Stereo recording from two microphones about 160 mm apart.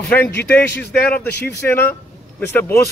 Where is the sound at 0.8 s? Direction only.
90° left.